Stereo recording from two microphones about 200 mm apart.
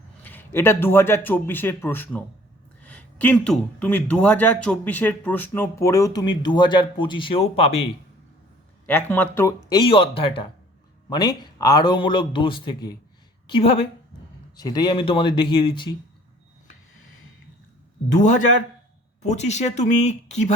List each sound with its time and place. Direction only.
0.2 s speech: 10° left (ahead or behind); by 7.9 s 30° left (ahead or behind)
8.9 s speech: 10° left (ahead or behind); by 13.8 s 30° left (ahead or behind)
14.5 s speech: 20° left (ahead or behind)
18.2 s speech: 35° left (ahead or behind)